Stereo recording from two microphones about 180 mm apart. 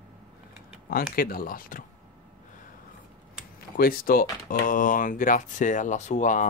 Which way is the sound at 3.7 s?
55° left (ahead or behind).